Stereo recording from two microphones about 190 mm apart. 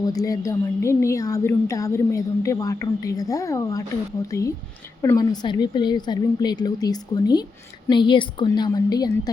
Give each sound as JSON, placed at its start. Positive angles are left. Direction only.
{"t": 0.0, "sound": "a woman's voice", "side_deg": 20}